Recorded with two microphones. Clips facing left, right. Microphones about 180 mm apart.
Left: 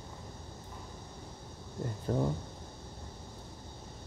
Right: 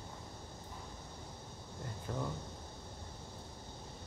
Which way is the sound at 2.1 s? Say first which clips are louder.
Left 9 dB; 40° left (ahead or behind).